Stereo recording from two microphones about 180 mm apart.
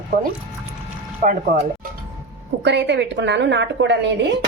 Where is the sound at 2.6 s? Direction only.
75° right (ahead or behind).